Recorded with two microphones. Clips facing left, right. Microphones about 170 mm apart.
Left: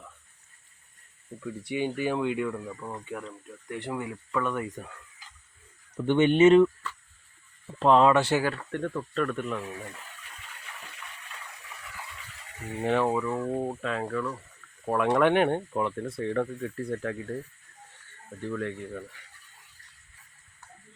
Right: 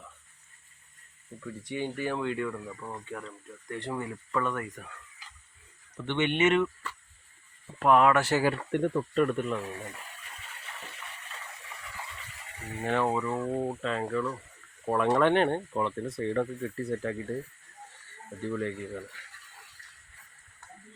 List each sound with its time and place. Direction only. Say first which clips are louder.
1.6 s speech: left 4 dB; 15° left (ahead or behind)
4.5 s speech: left 3 dB; 20° left (ahead or behind)
6.1 s speech: left 7 dB; 35° left (ahead or behind)
7.8 s speech: left 2 dB; 25° left (ahead or behind)
8.4 s speech: right 2 dB; 15° right (ahead or behind)
12.8 s speech: left 3 dB; 15° left (ahead or behind)
13.1 s speech: left 2 dB; centre (ahead or behind)
18.5 s speech: even; centre (ahead or behind)